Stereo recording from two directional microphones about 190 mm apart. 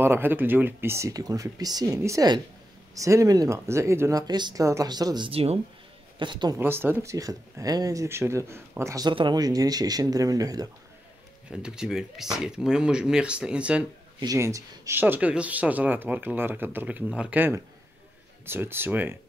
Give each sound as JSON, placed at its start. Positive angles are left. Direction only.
{"t": 0.0, "sound": "speech", "side_deg": -10}
{"t": 6.6, "sound": "speech", "side_deg": -10}
{"t": 11.5, "sound": "speech", "side_deg": -5}
{"t": 14.2, "sound": "speech", "side_deg": -15}